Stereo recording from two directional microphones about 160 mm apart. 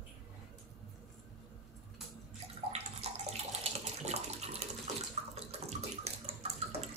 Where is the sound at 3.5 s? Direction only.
40° right (ahead or behind).